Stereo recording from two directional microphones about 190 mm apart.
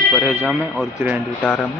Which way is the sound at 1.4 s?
10° left (ahead or behind).